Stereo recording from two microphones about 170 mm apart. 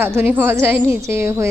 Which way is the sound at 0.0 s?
10° right (ahead or behind).